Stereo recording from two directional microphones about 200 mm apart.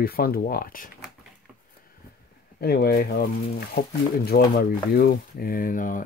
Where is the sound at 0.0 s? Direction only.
50° left (ahead or behind).